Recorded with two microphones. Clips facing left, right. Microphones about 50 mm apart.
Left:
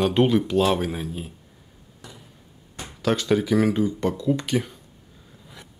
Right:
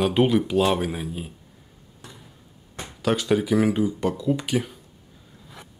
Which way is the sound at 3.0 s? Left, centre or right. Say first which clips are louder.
Even; centre.